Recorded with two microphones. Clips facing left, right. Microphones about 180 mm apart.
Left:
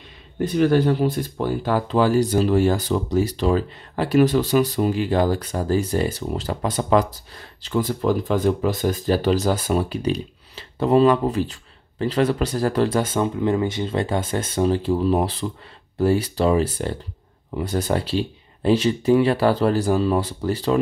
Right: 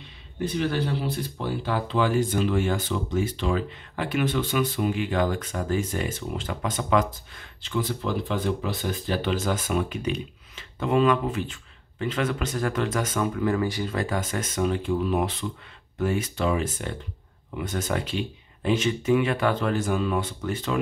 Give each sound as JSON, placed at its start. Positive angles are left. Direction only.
{"t": 0.4, "sound": "speech", "side_deg": 45}